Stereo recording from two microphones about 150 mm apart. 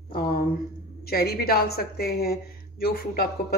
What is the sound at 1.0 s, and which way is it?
Speech, 90° left.